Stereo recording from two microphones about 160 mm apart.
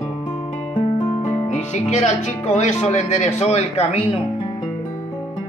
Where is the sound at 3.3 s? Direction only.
40° left (ahead or behind).